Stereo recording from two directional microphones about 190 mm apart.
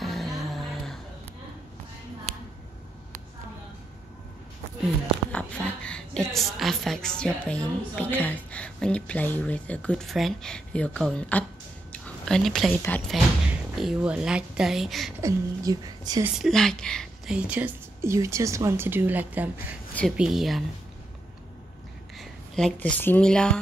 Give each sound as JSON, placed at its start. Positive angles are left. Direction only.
{"t": 0.0, "sound": "music", "side_deg": 0}
{"t": 5.3, "sound": "a woman's voice", "side_deg": 5}
{"t": 11.9, "sound": "a sound", "side_deg": 5}
{"t": 12.8, "sound": "speech", "side_deg": 10}
{"t": 13.7, "sound": "a woman's voice", "side_deg": -5}
{"t": 15.2, "sound": "a woman's voice", "side_deg": -20}
{"t": 16.3, "sound": "speech", "side_deg": 0}
{"t": 19.9, "sound": "a woman's voice", "side_deg": 5}
{"t": 22.2, "sound": "speech", "side_deg": 0}